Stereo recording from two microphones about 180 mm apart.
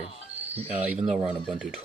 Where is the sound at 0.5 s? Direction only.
35° right (ahead or behind).